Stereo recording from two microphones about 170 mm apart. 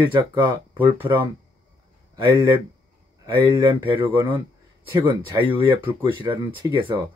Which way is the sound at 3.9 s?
30° right (ahead or behind).